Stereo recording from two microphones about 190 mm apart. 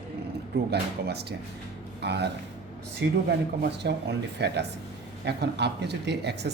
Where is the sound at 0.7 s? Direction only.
60° right (ahead or behind).